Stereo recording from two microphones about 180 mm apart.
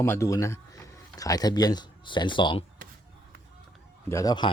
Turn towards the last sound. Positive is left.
turn(degrees=25)  # may be behind; listen again after turning